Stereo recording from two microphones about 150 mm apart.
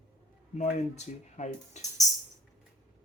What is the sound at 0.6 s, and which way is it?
Speech, 50° left (ahead or behind).